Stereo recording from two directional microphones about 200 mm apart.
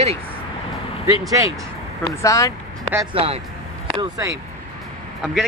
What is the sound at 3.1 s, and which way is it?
Speech, 30° right (ahead or behind).